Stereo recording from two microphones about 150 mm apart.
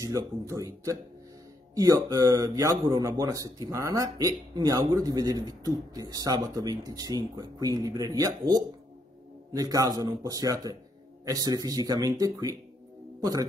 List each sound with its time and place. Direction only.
0.0 s a man's voice: 20° right (ahead or behind)